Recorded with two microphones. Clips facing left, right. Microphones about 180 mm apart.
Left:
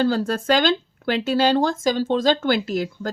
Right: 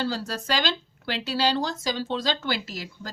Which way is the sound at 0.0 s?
50° left (ahead or behind).